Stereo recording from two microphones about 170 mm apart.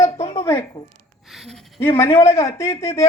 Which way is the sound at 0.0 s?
35° left (ahead or behind).